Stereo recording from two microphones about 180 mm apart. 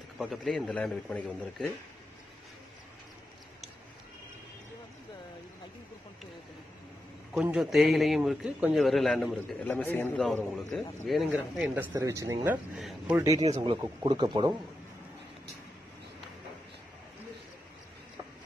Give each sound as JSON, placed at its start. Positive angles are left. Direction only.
{"t": 0.2, "sound": "a man's voice", "side_deg": 0}
{"t": 7.5, "sound": "a man's voice", "side_deg": 0}
{"t": 11.7, "sound": "speech", "side_deg": -15}
{"t": 13.4, "sound": "speech", "side_deg": -35}